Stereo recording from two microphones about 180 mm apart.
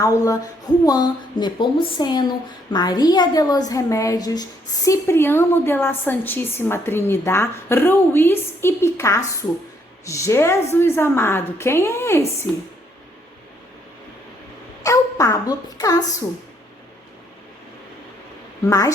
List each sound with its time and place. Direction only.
0.0 s a woman's voice: 15° left (ahead or behind)
14.8 s speech: 20° left (ahead or behind)